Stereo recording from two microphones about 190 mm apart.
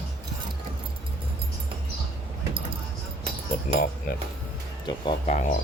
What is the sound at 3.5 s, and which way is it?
Cutlery, 45° left (ahead or behind).